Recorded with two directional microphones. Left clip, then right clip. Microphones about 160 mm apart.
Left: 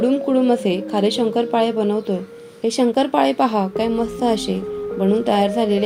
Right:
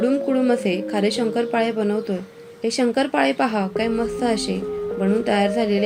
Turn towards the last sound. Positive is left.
turn(degrees=30)  # may be behind; listen again after turning